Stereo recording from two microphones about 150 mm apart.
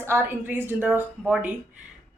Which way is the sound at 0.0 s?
15° right (ahead or behind).